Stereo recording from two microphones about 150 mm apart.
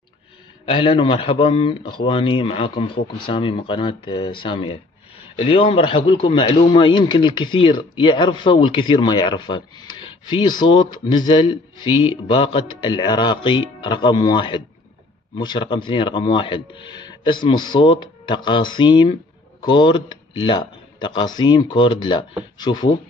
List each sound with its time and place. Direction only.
0.7 s a man's voice: 35° left (ahead or behind)